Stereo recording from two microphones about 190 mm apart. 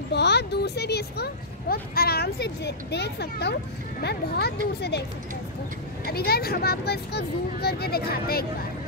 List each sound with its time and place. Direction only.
0.1 s speech: 60° left (ahead or behind)
6.0 s speech: 55° left (ahead or behind)